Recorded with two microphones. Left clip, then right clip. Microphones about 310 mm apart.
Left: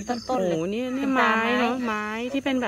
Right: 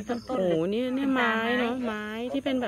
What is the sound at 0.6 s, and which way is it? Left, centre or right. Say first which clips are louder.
Speech: even; centre.